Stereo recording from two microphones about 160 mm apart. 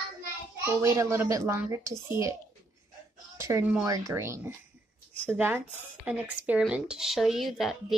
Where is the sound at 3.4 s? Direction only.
15° right (ahead or behind); by 7.9 s centre (ahead or behind).